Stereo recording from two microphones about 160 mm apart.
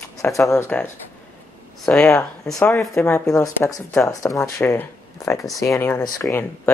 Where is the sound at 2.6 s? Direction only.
15° left (ahead or behind).